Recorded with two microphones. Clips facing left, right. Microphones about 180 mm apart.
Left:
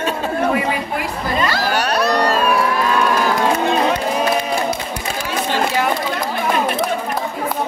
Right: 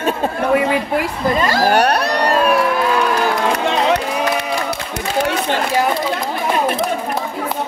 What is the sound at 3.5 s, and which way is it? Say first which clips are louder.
Run: right 1 dB; 75° right (ahead or behind).